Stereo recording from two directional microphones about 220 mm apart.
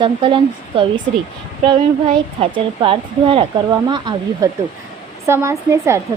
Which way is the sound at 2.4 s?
25° right (ahead or behind).